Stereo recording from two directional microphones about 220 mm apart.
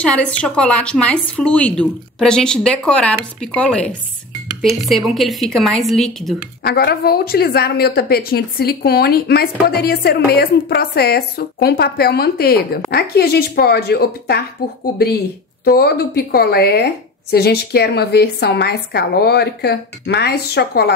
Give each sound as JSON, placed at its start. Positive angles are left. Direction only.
{"t": 0.0, "sound": "speech", "side_deg": 5}
{"t": 6.6, "sound": "a woman's voice", "side_deg": 45}
{"t": 15.6, "sound": "a woman's voice", "side_deg": 45}